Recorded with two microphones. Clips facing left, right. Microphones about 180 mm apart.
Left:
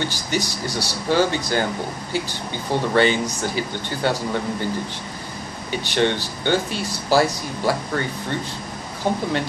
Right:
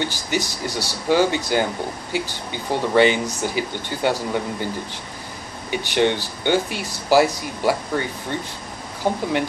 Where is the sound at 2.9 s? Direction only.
15° right (ahead or behind).